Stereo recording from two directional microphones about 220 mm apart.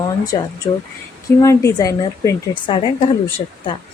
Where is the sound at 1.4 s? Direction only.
15° left (ahead or behind).